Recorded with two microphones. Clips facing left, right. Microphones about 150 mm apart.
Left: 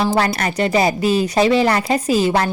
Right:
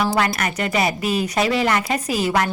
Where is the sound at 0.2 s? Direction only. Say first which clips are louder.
Left 3 dB; 30° left (ahead or behind).